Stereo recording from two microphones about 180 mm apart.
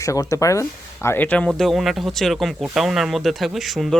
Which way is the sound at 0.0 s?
15° left (ahead or behind).